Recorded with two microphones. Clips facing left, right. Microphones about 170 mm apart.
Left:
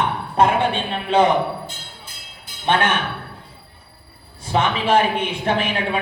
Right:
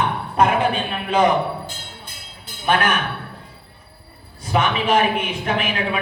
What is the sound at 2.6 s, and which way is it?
Speech, 25° left (ahead or behind).